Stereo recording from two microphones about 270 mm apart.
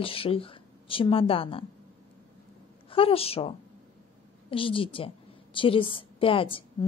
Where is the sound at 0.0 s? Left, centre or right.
Centre.